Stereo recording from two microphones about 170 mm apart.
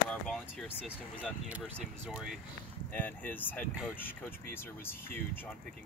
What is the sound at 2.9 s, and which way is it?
Speech, 10° left (ahead or behind).